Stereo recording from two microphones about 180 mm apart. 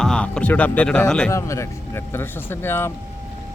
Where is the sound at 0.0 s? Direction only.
5° left (ahead or behind).